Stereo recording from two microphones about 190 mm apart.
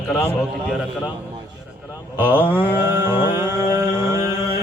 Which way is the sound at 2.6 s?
10° right (ahead or behind).